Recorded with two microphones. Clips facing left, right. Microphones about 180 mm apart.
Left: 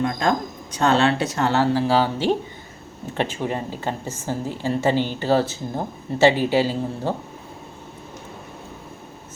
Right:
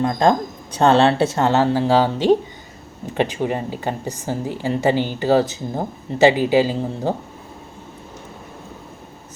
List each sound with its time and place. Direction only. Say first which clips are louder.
0.0 s speech: right 5 dB; 30° right (ahead or behind); by 7.1 s 15° right (ahead or behind)